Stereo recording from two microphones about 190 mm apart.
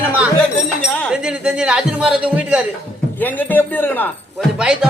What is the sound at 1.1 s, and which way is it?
A man's voice, 5° right (ahead or behind).